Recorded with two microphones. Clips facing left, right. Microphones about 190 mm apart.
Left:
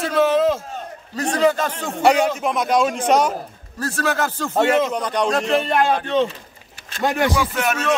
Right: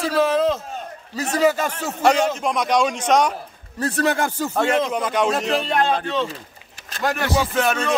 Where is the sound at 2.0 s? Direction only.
10° left (ahead or behind).